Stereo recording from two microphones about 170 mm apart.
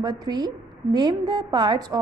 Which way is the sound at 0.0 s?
25° right (ahead or behind).